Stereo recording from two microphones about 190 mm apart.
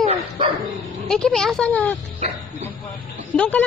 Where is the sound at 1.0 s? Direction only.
5° left (ahead or behind).